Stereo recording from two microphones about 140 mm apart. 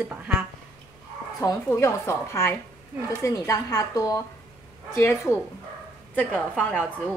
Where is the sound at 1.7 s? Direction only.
20° left (ahead or behind).